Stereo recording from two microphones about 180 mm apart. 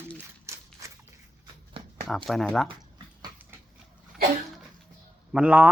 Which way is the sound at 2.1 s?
Centre (ahead or behind).